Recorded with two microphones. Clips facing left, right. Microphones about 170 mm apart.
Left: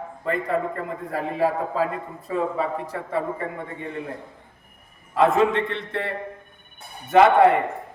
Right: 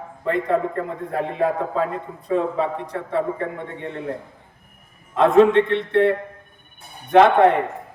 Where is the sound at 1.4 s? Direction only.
5° left (ahead or behind).